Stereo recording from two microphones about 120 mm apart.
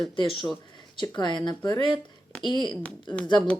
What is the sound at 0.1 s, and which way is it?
Speech, 45° left (ahead or behind).